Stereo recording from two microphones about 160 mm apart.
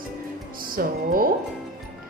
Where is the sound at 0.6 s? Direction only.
65° right (ahead or behind).